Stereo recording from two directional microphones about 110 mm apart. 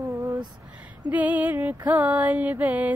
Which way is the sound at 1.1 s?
15° right (ahead or behind).